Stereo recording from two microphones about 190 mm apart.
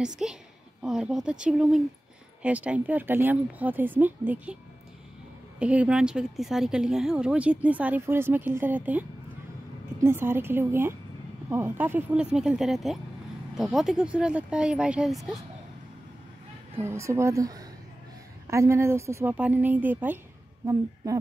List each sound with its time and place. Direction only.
0.0 s speech: 5° right (ahead or behind)
5.6 s speech: 5° right (ahead or behind)
10.0 s speech: 10° right (ahead or behind)
16.7 s speech: 15° right (ahead or behind)